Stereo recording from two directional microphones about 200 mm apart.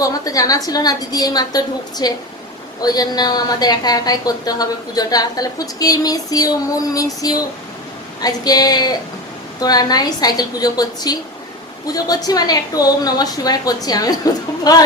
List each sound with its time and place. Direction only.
0.0 s a woman's voice: 15° left (ahead or behind)